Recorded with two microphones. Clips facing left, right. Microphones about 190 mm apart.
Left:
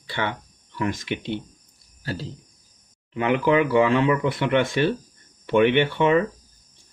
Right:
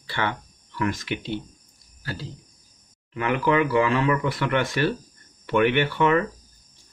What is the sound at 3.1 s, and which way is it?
Speech, 25° left (ahead or behind).